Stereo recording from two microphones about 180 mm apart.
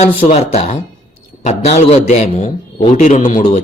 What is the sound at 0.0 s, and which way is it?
A man's voice, 35° left (ahead or behind).